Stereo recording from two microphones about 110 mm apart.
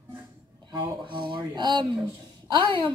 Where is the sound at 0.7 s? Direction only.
45° right (ahead or behind).